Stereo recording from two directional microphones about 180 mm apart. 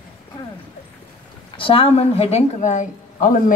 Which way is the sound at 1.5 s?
30° left (ahead or behind).